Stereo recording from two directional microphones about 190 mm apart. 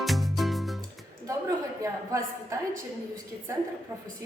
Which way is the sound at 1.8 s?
15° right (ahead or behind).